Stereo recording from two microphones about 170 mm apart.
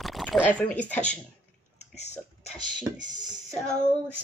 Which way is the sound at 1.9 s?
40° left (ahead or behind).